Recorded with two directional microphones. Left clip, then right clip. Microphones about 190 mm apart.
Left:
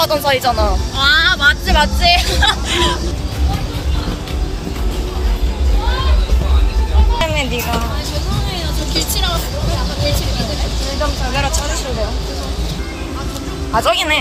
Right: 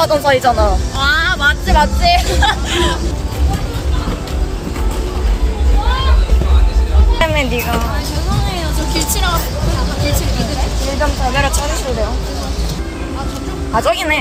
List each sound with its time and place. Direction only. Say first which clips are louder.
0.0 s speech: right 3 dB; 20° right (ahead or behind)
0.9 s speech: left 3 dB; 15° left (ahead or behind)
7.2 s a sound: right 3 dB; 10° right (ahead or behind)
8.5 s vehicle: left 2 dB; 55° right (ahead or behind)
11.3 s speech: right 1 dB; 15° right (ahead or behind)
13.7 s speech: even; centre (ahead or behind)